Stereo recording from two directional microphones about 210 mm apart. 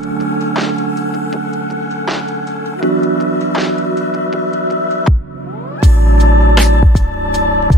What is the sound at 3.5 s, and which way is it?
Organ, centre (ahead or behind).